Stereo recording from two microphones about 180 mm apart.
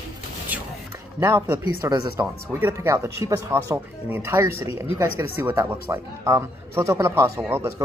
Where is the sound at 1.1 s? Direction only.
15° right (ahead or behind).